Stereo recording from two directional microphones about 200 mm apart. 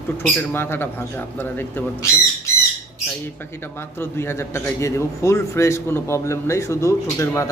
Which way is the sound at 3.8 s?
10° left (ahead or behind).